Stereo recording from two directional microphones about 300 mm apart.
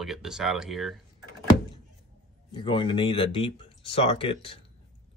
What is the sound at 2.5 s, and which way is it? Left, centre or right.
Speech, centre.